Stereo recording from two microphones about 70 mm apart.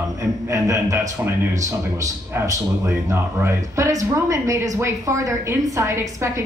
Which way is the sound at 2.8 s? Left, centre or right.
Right.